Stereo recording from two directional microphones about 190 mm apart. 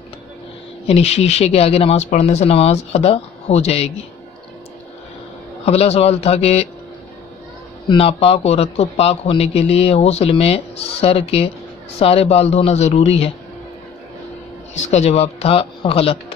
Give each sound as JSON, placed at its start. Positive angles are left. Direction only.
{"t": 0.8, "sound": "a man's voice", "side_deg": 35}
{"t": 5.7, "sound": "a man's voice", "side_deg": 30}
{"t": 7.9, "sound": "a man's voice", "side_deg": 30}
{"t": 14.8, "sound": "a man's voice", "side_deg": 35}